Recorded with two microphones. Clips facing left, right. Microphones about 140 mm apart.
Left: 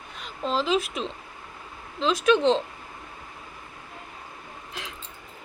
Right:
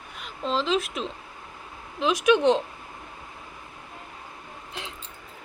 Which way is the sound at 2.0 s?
15° right (ahead or behind).